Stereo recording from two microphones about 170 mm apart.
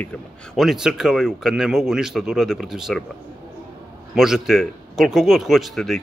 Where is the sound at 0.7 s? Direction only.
5° right (ahead or behind).